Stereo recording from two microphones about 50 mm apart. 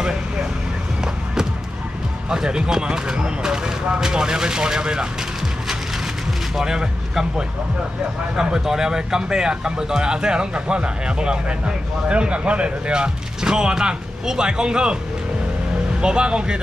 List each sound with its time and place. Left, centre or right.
0.0 s vehicle: centre
1.0 s music: centre
2.2 s speech: centre
6.5 s speech: centre
16.0 s speech: centre